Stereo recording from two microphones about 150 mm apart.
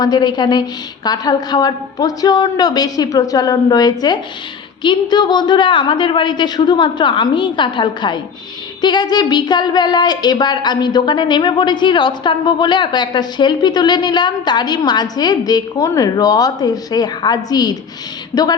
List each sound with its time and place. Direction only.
0.0 s a woman's voice: 30° left (ahead or behind)